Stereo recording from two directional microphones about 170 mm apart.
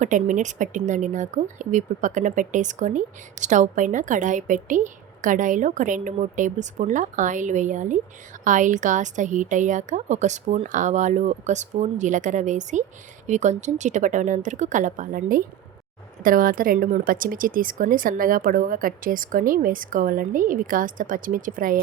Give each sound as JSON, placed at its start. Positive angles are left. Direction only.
{"t": 0.0, "sound": "speech", "side_deg": -45}